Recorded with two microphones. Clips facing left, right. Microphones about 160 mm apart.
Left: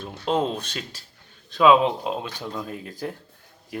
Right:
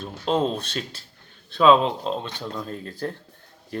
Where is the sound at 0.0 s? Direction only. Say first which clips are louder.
Right 1 dB; 10° left (ahead or behind).